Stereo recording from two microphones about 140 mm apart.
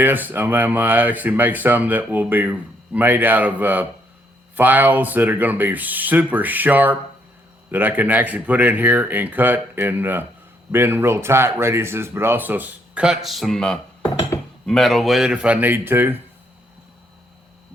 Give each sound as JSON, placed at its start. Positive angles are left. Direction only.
{"t": 0.0, "sound": "speech", "side_deg": -15}
{"t": 14.3, "sound": "cutlery", "side_deg": 20}
{"t": 14.7, "sound": "speech", "side_deg": 0}